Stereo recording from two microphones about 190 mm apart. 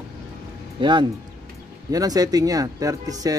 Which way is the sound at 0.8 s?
25° right (ahead or behind).